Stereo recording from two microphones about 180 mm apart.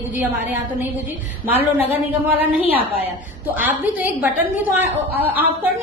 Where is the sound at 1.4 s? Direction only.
10° right (ahead or behind).